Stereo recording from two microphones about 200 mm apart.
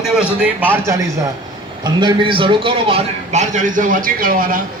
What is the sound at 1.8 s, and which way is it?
A man's voice, 25° right (ahead or behind).